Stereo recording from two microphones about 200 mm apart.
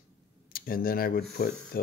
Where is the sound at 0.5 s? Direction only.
45° left (ahead or behind).